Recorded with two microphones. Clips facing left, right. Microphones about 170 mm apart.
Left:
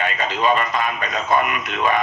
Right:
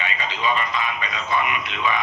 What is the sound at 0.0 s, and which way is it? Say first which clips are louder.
Speech: left 5 dB; 45° left (ahead or behind).